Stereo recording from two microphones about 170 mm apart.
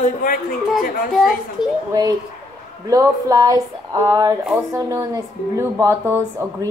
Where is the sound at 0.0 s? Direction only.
50° left (ahead or behind).